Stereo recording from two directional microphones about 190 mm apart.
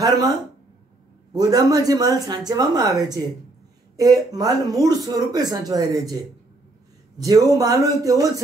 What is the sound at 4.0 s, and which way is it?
Speech, 20° right (ahead or behind).